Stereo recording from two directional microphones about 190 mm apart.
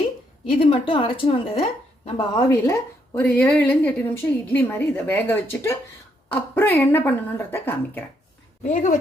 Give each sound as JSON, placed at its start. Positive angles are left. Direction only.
{"t": 0.5, "sound": "a woman's voice", "side_deg": 30}
{"t": 2.5, "sound": "a woman's voice", "side_deg": 15}
{"t": 8.6, "sound": "speech", "side_deg": 40}